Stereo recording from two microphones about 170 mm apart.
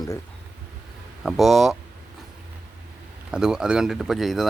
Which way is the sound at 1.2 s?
Centre (ahead or behind).